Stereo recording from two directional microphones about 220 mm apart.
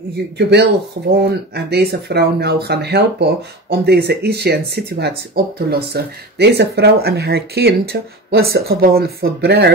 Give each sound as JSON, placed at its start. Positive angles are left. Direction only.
{"t": 0.4, "sound": "speech", "side_deg": -50}